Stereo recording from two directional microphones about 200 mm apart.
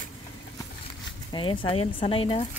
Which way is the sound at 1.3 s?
25° left (ahead or behind).